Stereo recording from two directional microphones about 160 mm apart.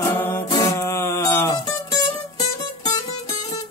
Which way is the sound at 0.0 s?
15° left (ahead or behind).